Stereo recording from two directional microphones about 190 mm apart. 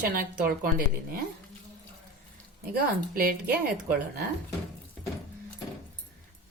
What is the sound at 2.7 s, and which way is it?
Speech, 50° right (ahead or behind).